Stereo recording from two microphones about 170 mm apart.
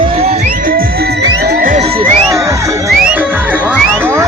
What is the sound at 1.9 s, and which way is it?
Music, 35° right (ahead or behind).